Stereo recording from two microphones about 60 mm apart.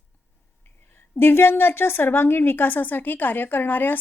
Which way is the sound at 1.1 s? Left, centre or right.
Left.